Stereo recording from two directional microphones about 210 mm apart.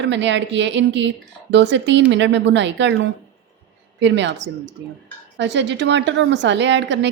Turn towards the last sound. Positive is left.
turn(degrees=-55)  # may be behind; listen again after turning